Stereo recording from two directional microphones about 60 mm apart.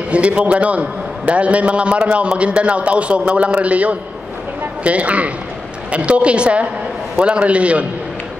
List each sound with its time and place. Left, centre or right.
0.1 s a man's voice: right